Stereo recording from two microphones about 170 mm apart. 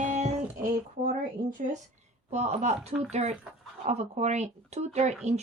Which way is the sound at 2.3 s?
40° right (ahead or behind).